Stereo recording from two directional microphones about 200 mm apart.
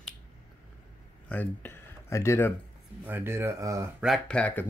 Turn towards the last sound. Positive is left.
turn(degrees=5)  # may be behind; listen again after turning